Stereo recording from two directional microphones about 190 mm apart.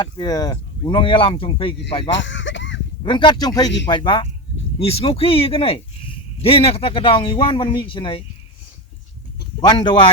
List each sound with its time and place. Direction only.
0.0 s speech: 20° left (ahead or behind)
2.0 s a sound: 75° left (ahead or behind)
3.0 s speech: 25° left (ahead or behind)
9.6 s speech: 25° left (ahead or behind)